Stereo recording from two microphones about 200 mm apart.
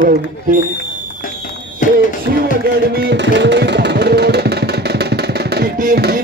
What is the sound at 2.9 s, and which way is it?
Music, 55° right (ahead or behind).